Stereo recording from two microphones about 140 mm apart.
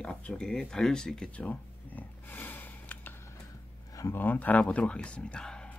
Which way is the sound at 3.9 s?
25° left (ahead or behind).